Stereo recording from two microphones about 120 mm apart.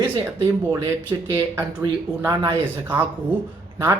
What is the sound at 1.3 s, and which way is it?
Speech, 25° right (ahead or behind).